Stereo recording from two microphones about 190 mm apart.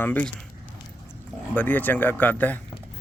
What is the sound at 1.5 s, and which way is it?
Speech, 10° left (ahead or behind).